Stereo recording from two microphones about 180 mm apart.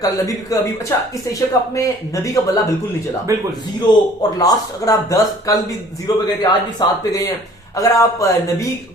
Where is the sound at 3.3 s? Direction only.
15° right (ahead or behind).